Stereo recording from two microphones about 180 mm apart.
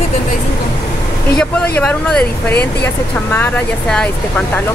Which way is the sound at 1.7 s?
5° left (ahead or behind).